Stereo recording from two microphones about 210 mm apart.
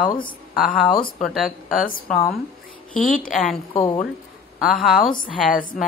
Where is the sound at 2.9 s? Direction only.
40° left (ahead or behind).